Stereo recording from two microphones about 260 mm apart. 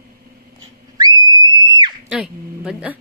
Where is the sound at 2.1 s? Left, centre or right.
Centre.